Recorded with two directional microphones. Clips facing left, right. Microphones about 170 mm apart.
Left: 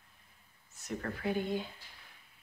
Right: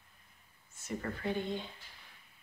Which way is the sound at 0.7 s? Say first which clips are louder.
Even; centre (ahead or behind).